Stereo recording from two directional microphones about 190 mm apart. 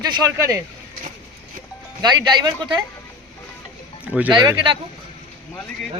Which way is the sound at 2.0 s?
20° right (ahead or behind).